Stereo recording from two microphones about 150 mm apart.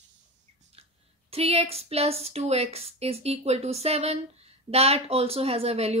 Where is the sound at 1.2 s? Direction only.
40° right (ahead or behind).